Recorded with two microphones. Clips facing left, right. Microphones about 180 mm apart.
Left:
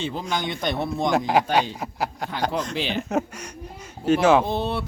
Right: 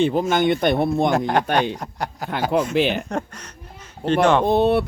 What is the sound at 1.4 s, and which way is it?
Speech, 5° left (ahead or behind).